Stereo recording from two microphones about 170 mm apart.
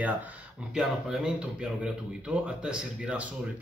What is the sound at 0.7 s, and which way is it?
Speech, 5° right (ahead or behind).